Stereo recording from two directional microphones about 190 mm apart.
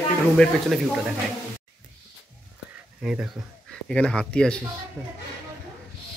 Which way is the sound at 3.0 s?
5° right (ahead or behind).